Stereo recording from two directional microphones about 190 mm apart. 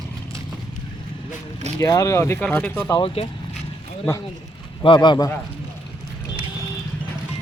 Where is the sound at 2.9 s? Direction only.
30° left (ahead or behind).